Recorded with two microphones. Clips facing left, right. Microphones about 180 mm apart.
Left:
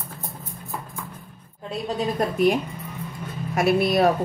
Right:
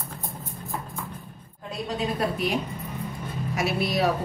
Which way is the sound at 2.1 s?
50° left (ahead or behind).